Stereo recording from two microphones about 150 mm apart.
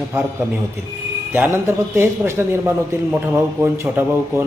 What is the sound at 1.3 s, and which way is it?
A man's voice, 15° right (ahead or behind).